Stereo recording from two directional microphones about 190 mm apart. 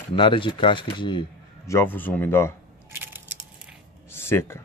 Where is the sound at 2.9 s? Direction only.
10° right (ahead or behind).